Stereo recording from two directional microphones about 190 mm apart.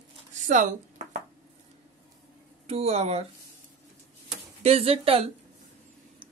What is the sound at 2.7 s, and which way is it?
Speech, 35° right (ahead or behind).